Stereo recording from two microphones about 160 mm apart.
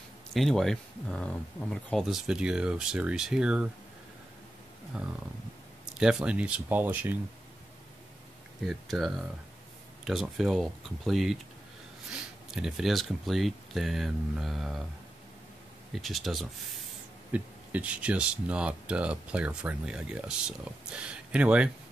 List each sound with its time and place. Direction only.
0.3 s speech: centre (ahead or behind)
5.9 s speech: 5° right (ahead or behind)
8.6 s speech: centre (ahead or behind)
12.4 s speech: 5° right (ahead or behind)
15.9 s speech: centre (ahead or behind)